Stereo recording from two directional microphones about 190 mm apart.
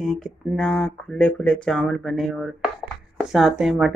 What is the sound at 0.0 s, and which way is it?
Speech, centre (ahead or behind).